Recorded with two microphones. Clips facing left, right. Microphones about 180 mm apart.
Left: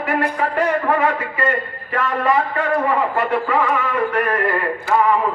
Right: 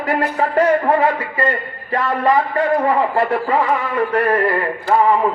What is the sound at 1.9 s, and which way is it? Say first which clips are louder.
A man's voice: right 2 dB; 35° right (ahead or behind).